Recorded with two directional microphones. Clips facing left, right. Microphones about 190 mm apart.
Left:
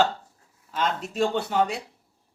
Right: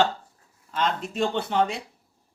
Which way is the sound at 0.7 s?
Centre (ahead or behind).